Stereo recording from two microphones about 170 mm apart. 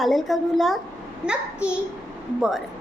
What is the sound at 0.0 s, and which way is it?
Speech, centre (ahead or behind).